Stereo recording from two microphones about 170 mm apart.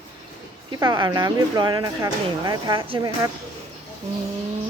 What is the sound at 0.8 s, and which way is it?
A woman's voice, 25° right (ahead or behind).